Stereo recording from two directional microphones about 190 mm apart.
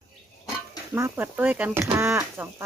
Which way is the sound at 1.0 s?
15° right (ahead or behind).